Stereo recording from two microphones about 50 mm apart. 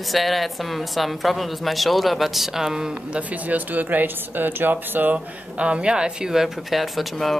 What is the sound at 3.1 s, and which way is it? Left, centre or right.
Speech, right.